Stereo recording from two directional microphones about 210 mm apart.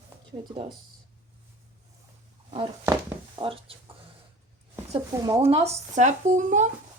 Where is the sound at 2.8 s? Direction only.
20° right (ahead or behind).